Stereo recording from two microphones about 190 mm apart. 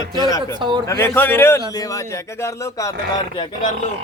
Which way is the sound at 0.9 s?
10° left (ahead or behind).